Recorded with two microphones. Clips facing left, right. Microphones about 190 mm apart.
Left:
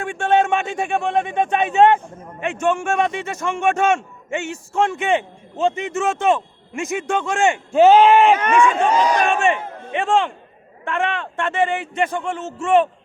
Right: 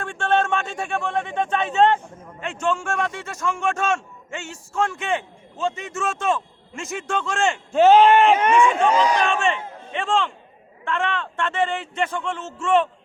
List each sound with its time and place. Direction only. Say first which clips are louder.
0.0 s a man's voice: left 4 dB; 15° left (ahead or behind)
7.8 s speech: left 2 dB; 5° left (ahead or behind)
8.4 s speech: left 1 dB; 25° right (ahead or behind)
9.9 s speech: left 4 dB; 15° left (ahead or behind)